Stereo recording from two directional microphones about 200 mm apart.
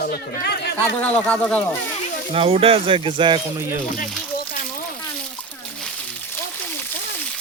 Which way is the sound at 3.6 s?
10° right (ahead or behind).